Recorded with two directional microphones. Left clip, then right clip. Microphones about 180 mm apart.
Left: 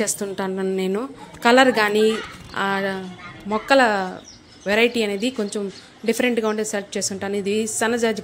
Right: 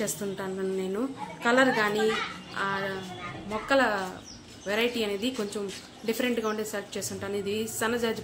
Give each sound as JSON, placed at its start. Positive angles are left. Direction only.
{"t": 0.0, "sound": "a woman's voice", "side_deg": 50}